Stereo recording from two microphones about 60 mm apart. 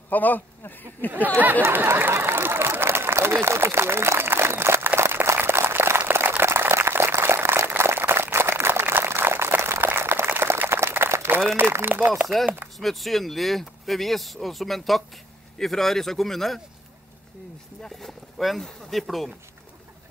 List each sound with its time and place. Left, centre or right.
0.1 s speech: left
1.9 s a sound: right
11.5 s speech: right
12.7 s speech: centre
17.8 s speech: centre